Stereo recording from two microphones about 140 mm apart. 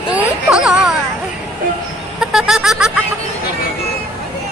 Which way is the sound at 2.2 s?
5° right (ahead or behind).